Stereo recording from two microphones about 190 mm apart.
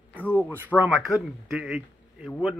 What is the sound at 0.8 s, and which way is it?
Speech, 5° right (ahead or behind).